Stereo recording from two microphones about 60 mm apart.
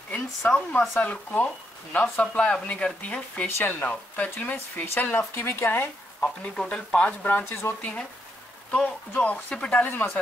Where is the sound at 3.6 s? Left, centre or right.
Left.